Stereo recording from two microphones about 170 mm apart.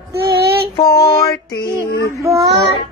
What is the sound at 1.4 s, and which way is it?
Child singing, 90° left.